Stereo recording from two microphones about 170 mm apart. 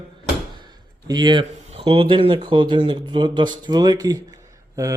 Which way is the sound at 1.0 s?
25° right (ahead or behind).